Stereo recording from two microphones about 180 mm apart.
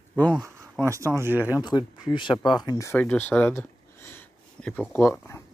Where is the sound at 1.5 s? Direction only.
20° left (ahead or behind).